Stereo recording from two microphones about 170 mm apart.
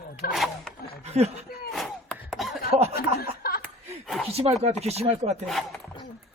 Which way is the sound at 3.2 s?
60° left (ahead or behind).